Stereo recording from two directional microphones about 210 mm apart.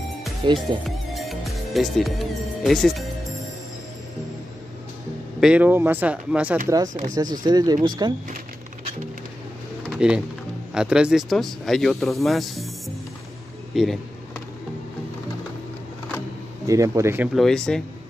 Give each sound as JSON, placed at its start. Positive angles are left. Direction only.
{"t": 0.6, "sound": "speech", "side_deg": 0}
{"t": 5.4, "sound": "speech", "side_deg": -5}
{"t": 6.9, "sound": "speech", "side_deg": -35}
{"t": 7.4, "sound": "speech", "side_deg": -20}
{"t": 9.8, "sound": "speech", "side_deg": -5}
{"t": 13.7, "sound": "vehicle", "side_deg": 0}
{"t": 16.6, "sound": "speech", "side_deg": -15}
{"t": 17.4, "sound": "speech", "side_deg": 0}